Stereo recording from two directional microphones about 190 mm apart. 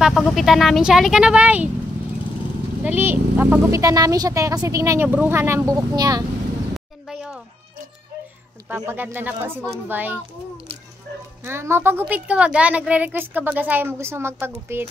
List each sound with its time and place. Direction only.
0.0 s speech: centre (ahead or behind)
2.8 s a woman's voice: 10° right (ahead or behind)
7.1 s music: centre (ahead or behind)
8.6 s a woman's voice: 10° right (ahead or behind)
11.4 s a woman's voice: 15° right (ahead or behind)